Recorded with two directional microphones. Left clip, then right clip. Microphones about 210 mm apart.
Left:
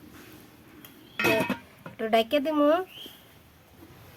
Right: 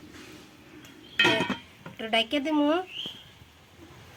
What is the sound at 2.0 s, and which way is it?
Speech, 40° left (ahead or behind).